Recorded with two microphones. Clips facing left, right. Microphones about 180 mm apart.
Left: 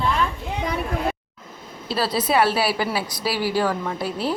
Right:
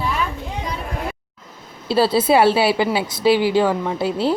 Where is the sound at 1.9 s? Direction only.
30° right (ahead or behind).